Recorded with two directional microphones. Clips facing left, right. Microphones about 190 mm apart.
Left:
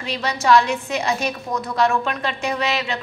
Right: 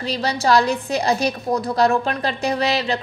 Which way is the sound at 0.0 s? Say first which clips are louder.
Right 2 dB; 35° right (ahead or behind).